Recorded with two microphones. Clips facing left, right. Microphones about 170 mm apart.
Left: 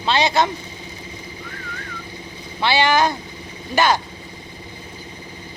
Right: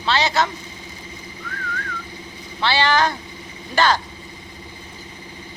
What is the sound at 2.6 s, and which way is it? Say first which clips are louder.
Speech: left 2 dB; 15° left (ahead or behind).